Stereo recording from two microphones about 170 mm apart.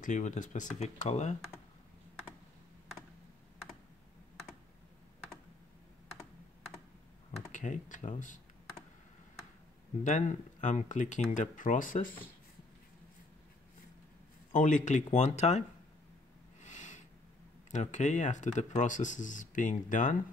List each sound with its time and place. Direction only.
0.0 s speech: 45° left (ahead or behind)
7.2 s speech: 40° left (ahead or behind)
10.0 s speech: 45° left (ahead or behind)
14.5 s speech: 50° left (ahead or behind)
16.6 s a sound: 45° left (ahead or behind)
17.6 s speech: 45° left (ahead or behind)